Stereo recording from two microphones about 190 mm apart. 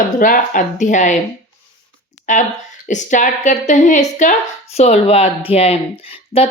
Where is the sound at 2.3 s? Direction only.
40° left (ahead or behind).